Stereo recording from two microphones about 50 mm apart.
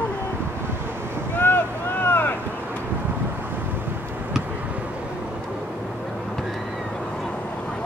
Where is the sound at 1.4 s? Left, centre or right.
Left.